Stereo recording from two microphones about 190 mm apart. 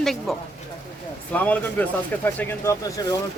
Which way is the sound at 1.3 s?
10° left (ahead or behind).